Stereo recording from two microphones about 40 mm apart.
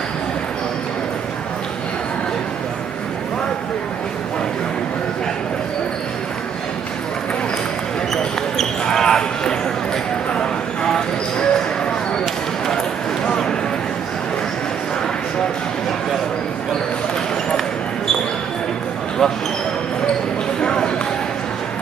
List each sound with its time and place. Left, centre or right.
8.8 s basketball bounce: centre
12.6 s a sound: centre
20.6 s basketball bounce: centre